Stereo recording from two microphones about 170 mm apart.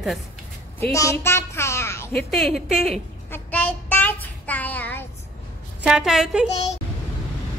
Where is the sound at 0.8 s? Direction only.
15° left (ahead or behind).